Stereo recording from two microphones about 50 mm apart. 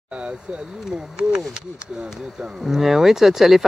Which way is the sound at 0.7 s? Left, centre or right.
Centre.